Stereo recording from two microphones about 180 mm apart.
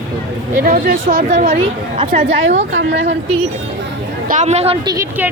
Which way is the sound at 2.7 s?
80° right.